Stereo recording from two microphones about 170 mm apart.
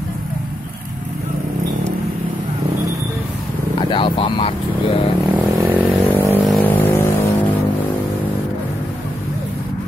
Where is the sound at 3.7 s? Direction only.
30° left (ahead or behind).